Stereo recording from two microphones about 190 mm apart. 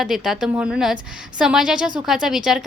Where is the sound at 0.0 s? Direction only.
Centre (ahead or behind).